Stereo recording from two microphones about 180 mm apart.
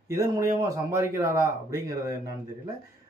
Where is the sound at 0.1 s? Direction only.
15° right (ahead or behind).